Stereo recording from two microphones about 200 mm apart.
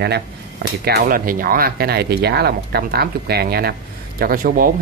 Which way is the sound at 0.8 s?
50° right (ahead or behind).